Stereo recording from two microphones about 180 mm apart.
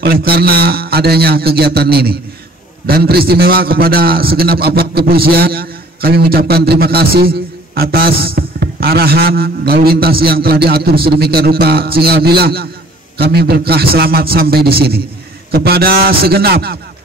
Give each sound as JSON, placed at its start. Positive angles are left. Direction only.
{"t": 0.0, "sound": "a man's voice", "side_deg": -60}